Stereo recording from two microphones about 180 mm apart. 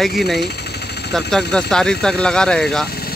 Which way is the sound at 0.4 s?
65° left (ahead or behind).